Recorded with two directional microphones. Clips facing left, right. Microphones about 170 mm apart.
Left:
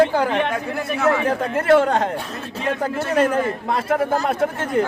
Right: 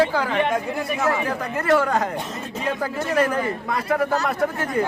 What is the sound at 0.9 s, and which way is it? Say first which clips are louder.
Speech: left 5 dB; 15° right (ahead or behind).